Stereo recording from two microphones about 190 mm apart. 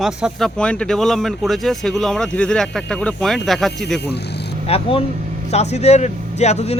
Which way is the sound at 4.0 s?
60° left (ahead or behind).